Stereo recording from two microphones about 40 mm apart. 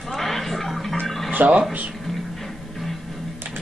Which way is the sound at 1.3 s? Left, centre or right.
Right.